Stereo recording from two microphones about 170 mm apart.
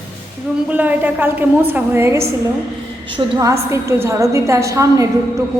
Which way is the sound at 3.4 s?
20° right (ahead or behind).